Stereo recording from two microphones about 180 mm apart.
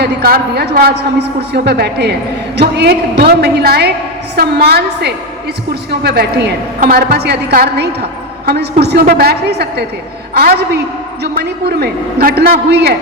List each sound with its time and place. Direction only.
0.0 s a man's voice: 60° right (ahead or behind)